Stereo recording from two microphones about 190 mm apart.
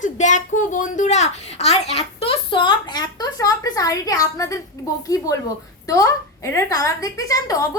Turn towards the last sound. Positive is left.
turn(degrees=20)  # may be behind; listen again after turning